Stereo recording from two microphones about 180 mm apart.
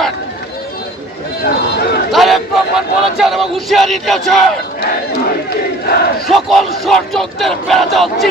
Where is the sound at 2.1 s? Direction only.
Centre (ahead or behind).